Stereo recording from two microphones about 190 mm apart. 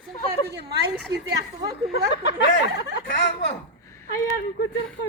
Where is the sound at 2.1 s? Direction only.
70° left (ahead or behind).